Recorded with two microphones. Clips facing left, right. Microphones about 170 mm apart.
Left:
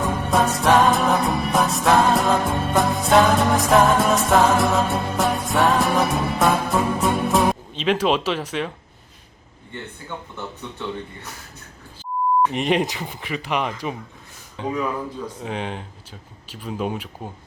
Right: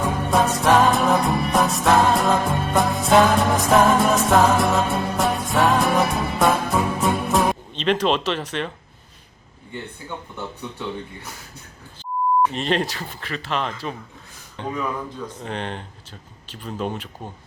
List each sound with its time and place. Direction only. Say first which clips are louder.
0.0 s music: even; centre (ahead or behind)
12.5 s speech: left 2 dB; 15° left (ahead or behind)